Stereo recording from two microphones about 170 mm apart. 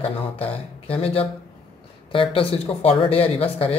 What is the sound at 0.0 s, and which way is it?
Speech, 35° left (ahead or behind).